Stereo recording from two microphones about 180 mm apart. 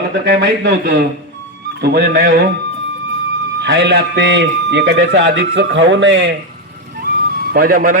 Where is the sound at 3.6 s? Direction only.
70° right (ahead or behind).